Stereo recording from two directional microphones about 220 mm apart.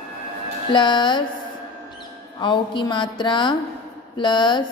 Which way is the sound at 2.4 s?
20° left (ahead or behind).